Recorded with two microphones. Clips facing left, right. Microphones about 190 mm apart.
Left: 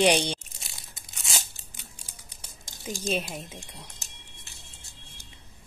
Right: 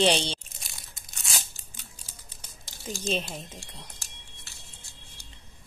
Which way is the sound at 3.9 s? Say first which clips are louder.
Left 1 dB; 20° left (ahead or behind).